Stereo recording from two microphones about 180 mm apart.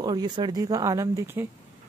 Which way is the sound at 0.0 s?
25° right (ahead or behind).